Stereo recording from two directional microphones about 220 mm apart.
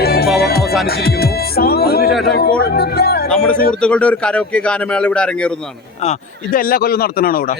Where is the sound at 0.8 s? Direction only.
45° left (ahead or behind).